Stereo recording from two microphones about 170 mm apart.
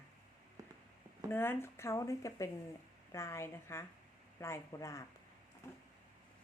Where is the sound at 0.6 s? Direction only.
20° right (ahead or behind).